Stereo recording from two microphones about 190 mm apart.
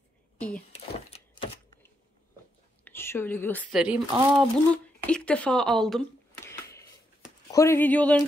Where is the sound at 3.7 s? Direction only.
5° right (ahead or behind).